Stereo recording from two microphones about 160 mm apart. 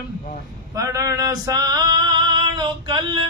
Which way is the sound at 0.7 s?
20° right (ahead or behind).